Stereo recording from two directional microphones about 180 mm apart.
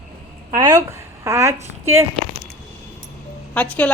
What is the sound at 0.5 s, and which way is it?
Speech, 20° right (ahead or behind).